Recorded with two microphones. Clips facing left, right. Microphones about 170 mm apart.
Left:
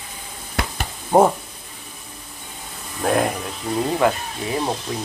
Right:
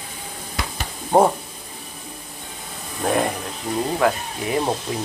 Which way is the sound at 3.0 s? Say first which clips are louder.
Left 1 dB; centre (ahead or behind).